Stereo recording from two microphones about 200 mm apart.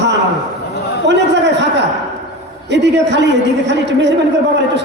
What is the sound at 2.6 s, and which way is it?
Speech, 60° right (ahead or behind).